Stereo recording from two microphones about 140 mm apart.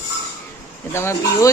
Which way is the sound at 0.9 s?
20° left (ahead or behind).